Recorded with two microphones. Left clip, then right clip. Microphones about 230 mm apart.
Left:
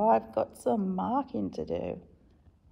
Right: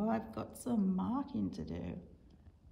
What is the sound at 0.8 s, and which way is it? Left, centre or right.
Speech, left.